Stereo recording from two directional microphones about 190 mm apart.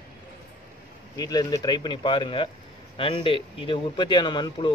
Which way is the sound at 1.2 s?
20° left (ahead or behind).